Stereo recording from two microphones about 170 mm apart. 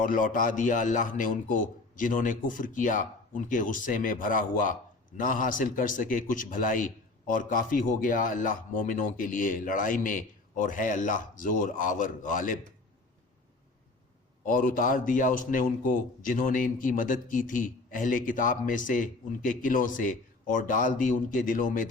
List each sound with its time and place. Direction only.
0.0 s a man's voice: 50° left (ahead or behind)
14.4 s a man's voice: 50° left (ahead or behind)